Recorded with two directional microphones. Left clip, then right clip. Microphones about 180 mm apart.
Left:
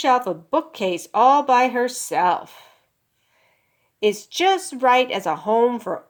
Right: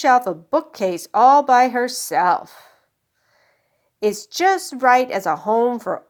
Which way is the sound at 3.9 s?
35° right (ahead or behind).